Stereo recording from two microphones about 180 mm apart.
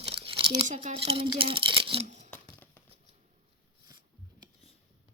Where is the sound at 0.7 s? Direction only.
40° right (ahead or behind).